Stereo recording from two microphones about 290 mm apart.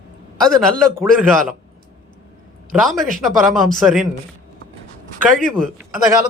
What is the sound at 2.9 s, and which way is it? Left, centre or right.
A man's voice, centre.